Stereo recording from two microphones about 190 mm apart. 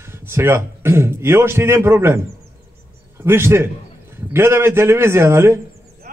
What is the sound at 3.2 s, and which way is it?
A man's voice, 15° right (ahead or behind).